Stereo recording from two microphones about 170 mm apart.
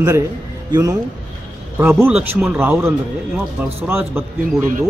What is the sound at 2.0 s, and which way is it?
A man's voice, 10° right (ahead or behind).